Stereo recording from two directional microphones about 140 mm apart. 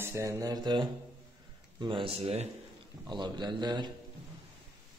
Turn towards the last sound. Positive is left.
turn(degrees=-30)  # may be behind; listen again after turning